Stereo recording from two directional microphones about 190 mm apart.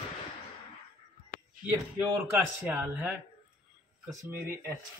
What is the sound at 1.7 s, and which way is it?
A man's voice, 10° right (ahead or behind).